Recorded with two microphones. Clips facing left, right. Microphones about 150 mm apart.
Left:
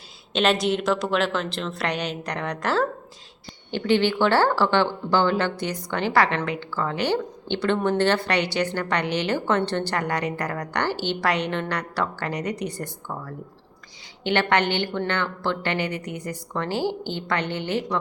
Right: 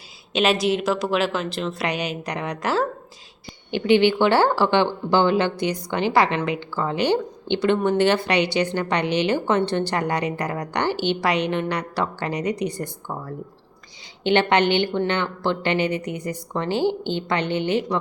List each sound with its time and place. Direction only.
0.3 s a woman's voice: 5° right (ahead or behind)